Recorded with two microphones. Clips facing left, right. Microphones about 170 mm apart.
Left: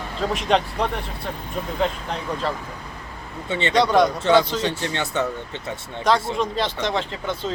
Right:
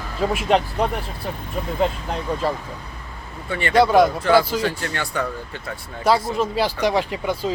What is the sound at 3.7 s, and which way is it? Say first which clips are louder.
Speech: right 3 dB; 5° right (ahead or behind).